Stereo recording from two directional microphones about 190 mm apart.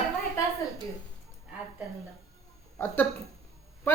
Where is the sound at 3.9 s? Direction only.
10° left (ahead or behind).